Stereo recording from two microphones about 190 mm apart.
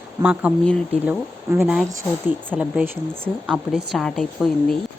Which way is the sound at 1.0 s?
10° right (ahead or behind).